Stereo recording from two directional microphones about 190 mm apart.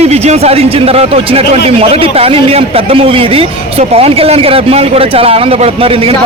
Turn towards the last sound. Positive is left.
turn(degrees=-30)  # may be behind; listen again after turning